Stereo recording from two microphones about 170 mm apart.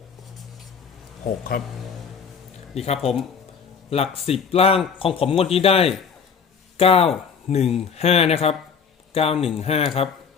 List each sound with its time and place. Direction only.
1.5 s speech: 60° left (ahead or behind)
2.7 s speech: 40° left (ahead or behind)